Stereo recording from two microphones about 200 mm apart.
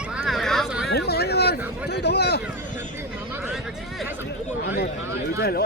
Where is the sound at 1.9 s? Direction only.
55° left (ahead or behind).